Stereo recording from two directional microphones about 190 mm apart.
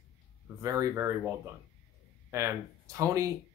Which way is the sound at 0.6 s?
15° right (ahead or behind).